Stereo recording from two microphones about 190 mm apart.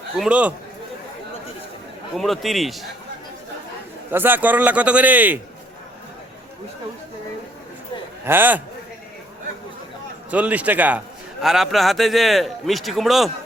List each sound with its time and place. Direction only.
0.2 s a man's voice: 5° right (ahead or behind)
2.1 s a man's voice: centre (ahead or behind)
4.1 s a man's voice: 10° right (ahead or behind)
8.2 s a man's voice: 10° right (ahead or behind)
10.3 s a man's voice: 10° right (ahead or behind)